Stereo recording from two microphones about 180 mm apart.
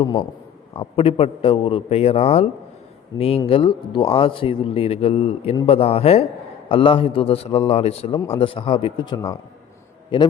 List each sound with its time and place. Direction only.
0.0 s speech: 25° left (ahead or behind)